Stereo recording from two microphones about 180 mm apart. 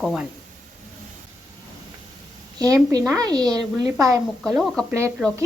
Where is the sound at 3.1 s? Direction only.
20° right (ahead or behind).